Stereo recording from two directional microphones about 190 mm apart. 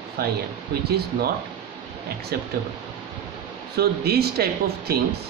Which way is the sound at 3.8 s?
55° right (ahead or behind).